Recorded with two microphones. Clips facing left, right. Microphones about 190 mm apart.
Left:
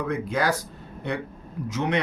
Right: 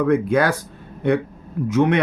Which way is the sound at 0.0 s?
55° right (ahead or behind).